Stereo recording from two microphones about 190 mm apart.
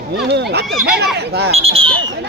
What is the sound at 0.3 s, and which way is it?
Speech, 60° right (ahead or behind).